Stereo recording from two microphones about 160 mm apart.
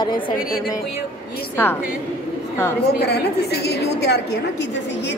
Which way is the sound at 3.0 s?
90° left.